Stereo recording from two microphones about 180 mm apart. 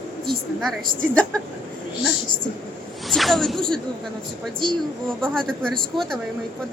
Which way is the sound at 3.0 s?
Centre (ahead or behind).